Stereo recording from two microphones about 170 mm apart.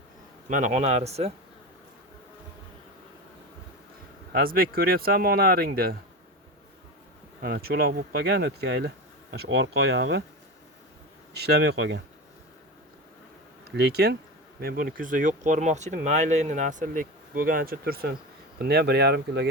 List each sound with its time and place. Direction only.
0.4 s speech: 50° right (ahead or behind)
4.3 s speech: 60° right (ahead or behind)
7.4 s speech: 65° right (ahead or behind); by 10.2 s 85° right
11.3 s speech: 75° right (ahead or behind); by 12.0 s 90° right
13.7 s speech: 70° right (ahead or behind); by 19.5 s 85° right